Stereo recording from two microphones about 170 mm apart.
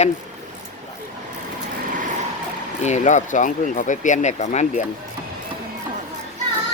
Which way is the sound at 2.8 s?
45° left (ahead or behind).